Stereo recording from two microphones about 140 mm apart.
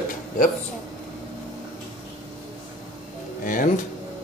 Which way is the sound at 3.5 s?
70° left (ahead or behind).